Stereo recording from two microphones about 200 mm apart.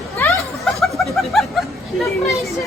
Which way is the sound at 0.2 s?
15° left (ahead or behind).